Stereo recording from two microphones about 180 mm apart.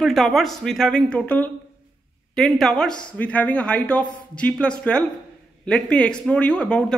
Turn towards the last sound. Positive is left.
turn(degrees=5)  # may be behind; listen again after turning